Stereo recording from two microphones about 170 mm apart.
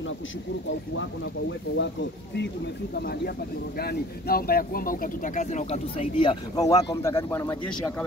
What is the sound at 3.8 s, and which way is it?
Speech, 65° left (ahead or behind).